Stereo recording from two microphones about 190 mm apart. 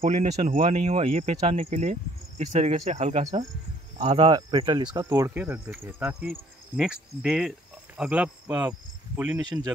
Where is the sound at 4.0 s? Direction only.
25° right (ahead or behind); by 6.3 s 10° right (ahead or behind).